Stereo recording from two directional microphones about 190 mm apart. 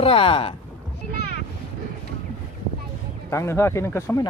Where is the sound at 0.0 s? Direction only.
30° left (ahead or behind).